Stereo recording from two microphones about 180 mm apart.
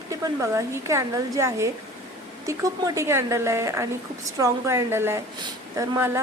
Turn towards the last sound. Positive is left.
turn(degrees=-15)  # may be behind; listen again after turning